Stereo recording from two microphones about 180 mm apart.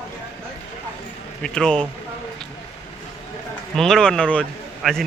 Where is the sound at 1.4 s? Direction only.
5° left (ahead or behind).